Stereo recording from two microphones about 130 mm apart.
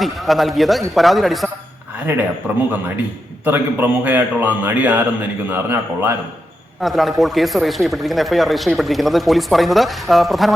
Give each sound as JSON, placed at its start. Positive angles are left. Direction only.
{"t": 0.0, "sound": "speech", "side_deg": 0}
{"t": 2.1, "sound": "a man's voice", "side_deg": -15}
{"t": 3.4, "sound": "a man's voice", "side_deg": -15}
{"t": 6.8, "sound": "speech", "side_deg": 0}